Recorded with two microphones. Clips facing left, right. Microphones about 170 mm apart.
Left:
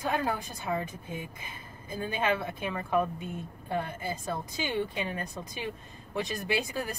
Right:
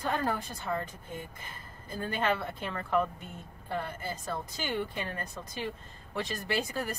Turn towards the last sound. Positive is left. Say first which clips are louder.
# left 1 dB
turn(degrees=15)  # may be behind; listen again after turning